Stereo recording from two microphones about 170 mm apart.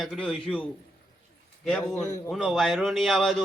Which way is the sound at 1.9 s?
20° left (ahead or behind).